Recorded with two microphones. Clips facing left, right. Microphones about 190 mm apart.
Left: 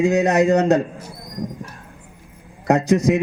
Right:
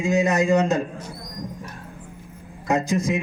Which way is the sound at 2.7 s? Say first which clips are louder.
Left 6 dB; 65° left (ahead or behind).